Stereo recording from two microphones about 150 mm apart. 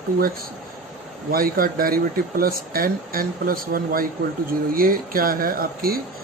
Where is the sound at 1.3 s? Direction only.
75° right (ahead or behind).